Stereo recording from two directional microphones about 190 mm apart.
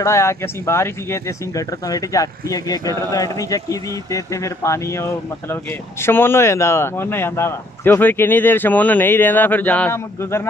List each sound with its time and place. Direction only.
0.0 s speech: 15° left (ahead or behind)